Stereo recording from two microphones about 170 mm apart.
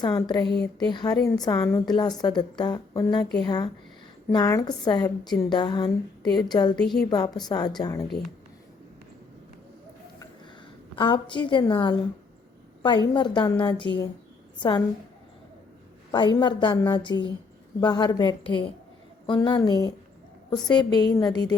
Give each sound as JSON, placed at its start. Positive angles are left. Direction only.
{"t": 0.0, "sound": "a woman's voice", "side_deg": 25}
{"t": 0.4, "sound": "speech", "side_deg": 75}
{"t": 0.8, "sound": "a woman's voice", "side_deg": 25}
{"t": 10.9, "sound": "a woman's voice", "side_deg": 30}
{"t": 16.1, "sound": "a woman's voice", "side_deg": 25}